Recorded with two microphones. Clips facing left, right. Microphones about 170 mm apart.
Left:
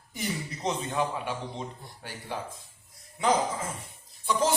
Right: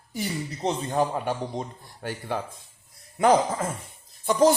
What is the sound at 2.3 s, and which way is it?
Speech, 55° right (ahead or behind).